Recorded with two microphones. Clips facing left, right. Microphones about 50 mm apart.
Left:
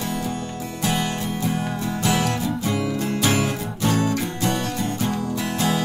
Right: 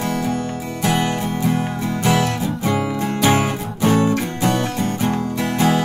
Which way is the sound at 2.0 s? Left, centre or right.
Right.